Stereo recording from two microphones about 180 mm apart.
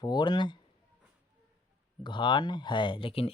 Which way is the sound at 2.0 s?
25° left (ahead or behind).